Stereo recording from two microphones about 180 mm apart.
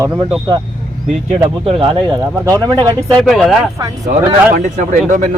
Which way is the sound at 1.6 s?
30° right (ahead or behind).